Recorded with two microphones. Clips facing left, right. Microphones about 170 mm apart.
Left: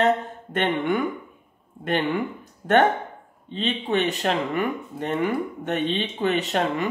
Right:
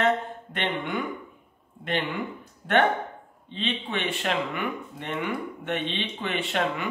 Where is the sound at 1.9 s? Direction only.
45° left (ahead or behind).